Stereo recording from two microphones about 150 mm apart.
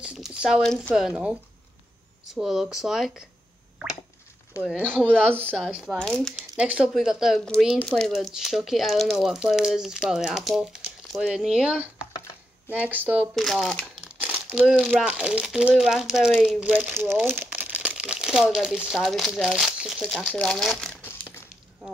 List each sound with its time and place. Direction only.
0.0 s a sound: 5° right (ahead or behind)
0.6 s speech: 5° left (ahead or behind)
4.6 s speech: 10° right (ahead or behind)
5.4 s speech: 10° left (ahead or behind)
5.7 s speech: 5° right (ahead or behind)
5.9 s speech: 5° left (ahead or behind)
6.5 s speech: 5° right (ahead or behind)
13.3 s speech: centre (ahead or behind)
14.2 s speech: 5° right (ahead or behind)
20.2 s speech: 5° left (ahead or behind)
21.0 s crushing: 15° left (ahead or behind)